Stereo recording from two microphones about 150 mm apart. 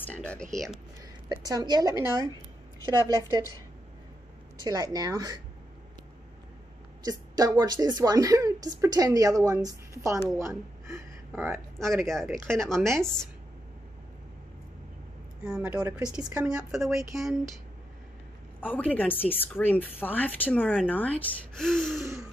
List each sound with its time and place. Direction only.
0.0 s speech: 10° left (ahead or behind)
1.3 s speech: 25° right (ahead or behind)
4.6 s speech: 25° right (ahead or behind)
7.1 s a woman's voice: 25° right (ahead or behind)
11.8 s speech: centre (ahead or behind)
15.4 s speech: 5° right (ahead or behind)
18.6 s a woman's voice: 10° left (ahead or behind)
21.9 s speech: 20° right (ahead or behind)